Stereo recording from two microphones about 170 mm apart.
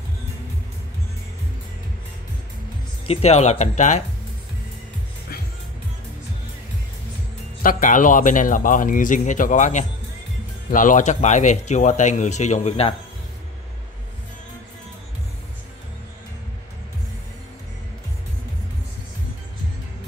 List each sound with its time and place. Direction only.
3.1 s speech: 40° left (ahead or behind)
7.6 s a man's voice: 50° left (ahead or behind)